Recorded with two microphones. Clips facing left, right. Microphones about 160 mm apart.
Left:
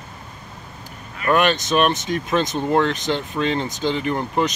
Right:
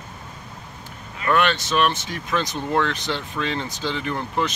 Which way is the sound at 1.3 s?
15° left (ahead or behind).